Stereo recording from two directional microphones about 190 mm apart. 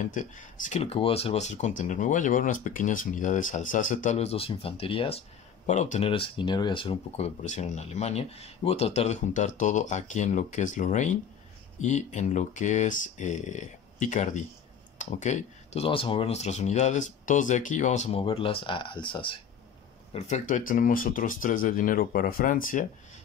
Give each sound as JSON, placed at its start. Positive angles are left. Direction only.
{"t": 0.0, "sound": "speech", "side_deg": 40}
{"t": 20.1, "sound": "speech", "side_deg": 40}